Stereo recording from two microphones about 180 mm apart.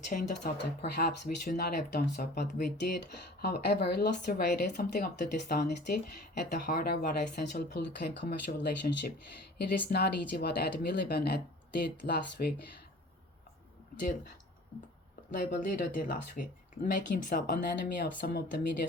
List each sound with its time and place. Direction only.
0.1 s speech: 50° left (ahead or behind)
0.6 s speech: 65° left (ahead or behind)
4.8 s speech: 50° left (ahead or behind); by 12.6 s 65° left (ahead or behind)
15.3 s speech: 50° left (ahead or behind)